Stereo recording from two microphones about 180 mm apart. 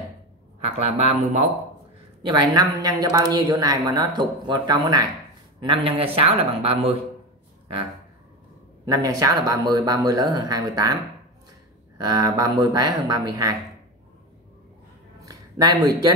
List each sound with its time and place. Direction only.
0.7 s speech: 35° right (ahead or behind)
2.2 s a woman's voice: 25° right (ahead or behind)
8.8 s a woman's voice: 20° right (ahead or behind)
12.0 s a woman's voice: 20° right (ahead or behind)
15.2 s speech: 20° right (ahead or behind)